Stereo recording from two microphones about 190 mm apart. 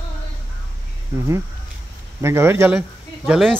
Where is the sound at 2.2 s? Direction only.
15° right (ahead or behind).